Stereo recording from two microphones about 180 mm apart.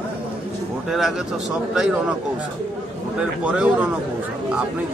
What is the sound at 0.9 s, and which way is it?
Speech, centre (ahead or behind).